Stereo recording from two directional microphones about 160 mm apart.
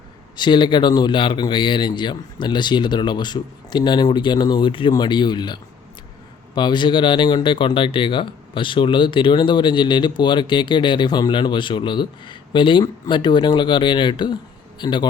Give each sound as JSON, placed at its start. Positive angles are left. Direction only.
{"t": 0.3, "sound": "speech", "side_deg": 30}